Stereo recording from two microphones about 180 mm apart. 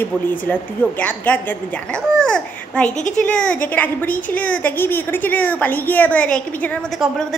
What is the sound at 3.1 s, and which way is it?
A woman's voice, 5° left (ahead or behind).